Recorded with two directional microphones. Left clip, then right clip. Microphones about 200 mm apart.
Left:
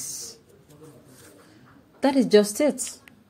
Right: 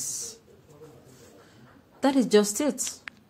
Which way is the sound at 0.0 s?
10° left (ahead or behind).